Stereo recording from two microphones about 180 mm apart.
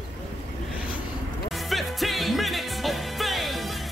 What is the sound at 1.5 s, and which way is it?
Music, centre (ahead or behind).